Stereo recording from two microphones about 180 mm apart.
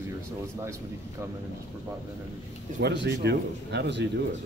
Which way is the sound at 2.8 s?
65° right (ahead or behind).